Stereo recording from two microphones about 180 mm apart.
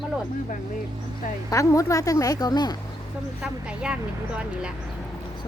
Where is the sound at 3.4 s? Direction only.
5° right (ahead or behind).